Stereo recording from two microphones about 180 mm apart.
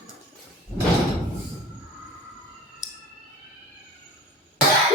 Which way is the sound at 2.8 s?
5° right (ahead or behind).